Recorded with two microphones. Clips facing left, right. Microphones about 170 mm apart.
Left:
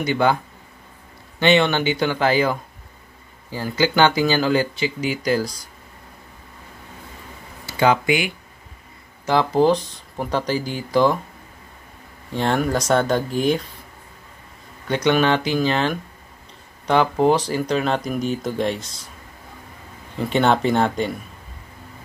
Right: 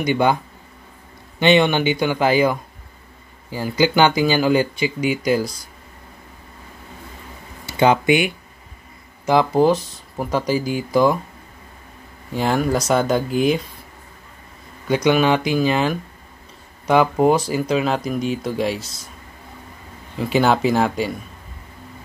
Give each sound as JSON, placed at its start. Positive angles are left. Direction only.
{"t": 0.0, "sound": "speech", "side_deg": -15}
{"t": 1.4, "sound": "speech", "side_deg": -15}
{"t": 7.6, "sound": "speech", "side_deg": -20}
{"t": 12.3, "sound": "speech", "side_deg": -5}
{"t": 15.0, "sound": "speech", "side_deg": -10}
{"t": 20.2, "sound": "speech", "side_deg": -5}